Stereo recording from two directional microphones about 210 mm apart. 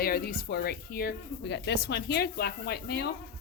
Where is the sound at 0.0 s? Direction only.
45° left (ahead or behind).